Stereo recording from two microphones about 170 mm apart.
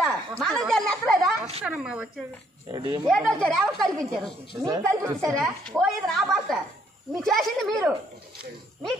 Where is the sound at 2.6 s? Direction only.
25° right (ahead or behind).